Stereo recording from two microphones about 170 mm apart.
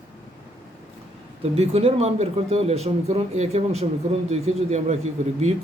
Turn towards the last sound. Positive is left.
turn(degrees=-40)  # may be behind; listen again after turning